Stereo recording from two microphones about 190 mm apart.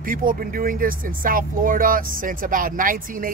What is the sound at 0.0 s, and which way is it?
Speech, 45° right (ahead or behind).